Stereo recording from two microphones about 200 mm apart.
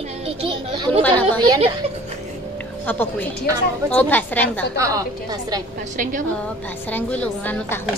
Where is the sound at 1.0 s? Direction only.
10° left (ahead or behind).